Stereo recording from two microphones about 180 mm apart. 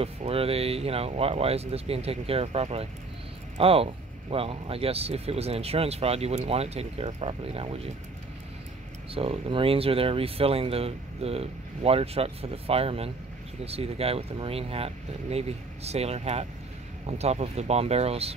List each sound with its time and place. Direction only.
0.0 s speech: 35° right (ahead or behind)
9.1 s speech: 30° right (ahead or behind)